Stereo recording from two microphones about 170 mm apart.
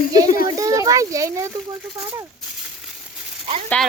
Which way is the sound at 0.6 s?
20° right (ahead or behind).